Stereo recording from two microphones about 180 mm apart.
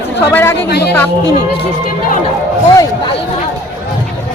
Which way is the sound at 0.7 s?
65° left (ahead or behind).